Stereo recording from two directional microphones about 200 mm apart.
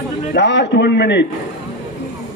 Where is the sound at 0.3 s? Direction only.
60° left (ahead or behind).